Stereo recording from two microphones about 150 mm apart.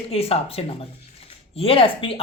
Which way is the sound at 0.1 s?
40° left (ahead or behind).